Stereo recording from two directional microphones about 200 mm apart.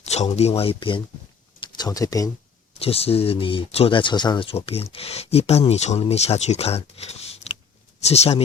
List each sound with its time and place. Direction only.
0.0 s speech: 35° left (ahead or behind); by 2.3 s 15° left (ahead or behind)
2.7 s speech: 30° left (ahead or behind)